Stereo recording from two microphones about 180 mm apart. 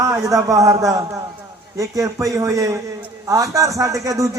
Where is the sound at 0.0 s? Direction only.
15° right (ahead or behind).